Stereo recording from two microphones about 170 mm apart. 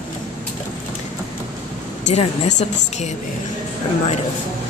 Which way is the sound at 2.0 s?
40° left (ahead or behind).